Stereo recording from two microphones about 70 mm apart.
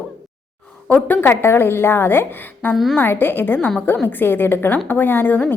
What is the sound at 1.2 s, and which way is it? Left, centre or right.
A woman's voice, left.